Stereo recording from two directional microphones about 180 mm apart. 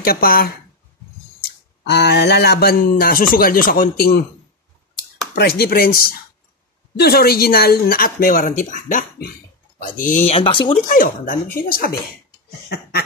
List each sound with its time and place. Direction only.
0.0 s speech: 55° left (ahead or behind)
1.9 s speech: 65° left (ahead or behind)
5.3 s speech: 60° left (ahead or behind); by 10.7 s 30° left (ahead or behind)
10.7 s speech: 50° left (ahead or behind)
12.6 s a sound: 60° left (ahead or behind)